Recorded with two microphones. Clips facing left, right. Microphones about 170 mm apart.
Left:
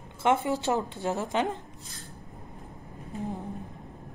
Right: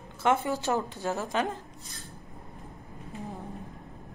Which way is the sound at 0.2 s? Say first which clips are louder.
Left 1 dB; 20° left (ahead or behind).